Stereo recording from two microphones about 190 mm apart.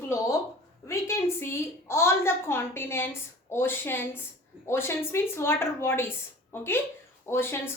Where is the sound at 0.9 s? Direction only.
15° left (ahead or behind).